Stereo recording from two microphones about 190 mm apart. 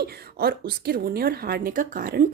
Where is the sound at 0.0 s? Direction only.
55° right (ahead or behind).